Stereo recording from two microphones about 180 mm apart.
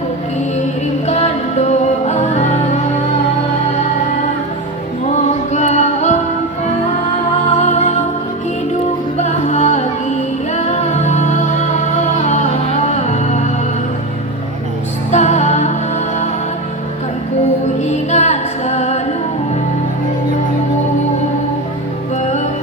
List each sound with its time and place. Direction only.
1.0 s music: 35° left (ahead or behind)
5.1 s music: 40° left (ahead or behind)
7.6 s music: 40° left (ahead or behind)
9.1 s music: 40° left (ahead or behind)
15.1 s music: 40° left (ahead or behind)
17.8 s music: 40° left (ahead or behind)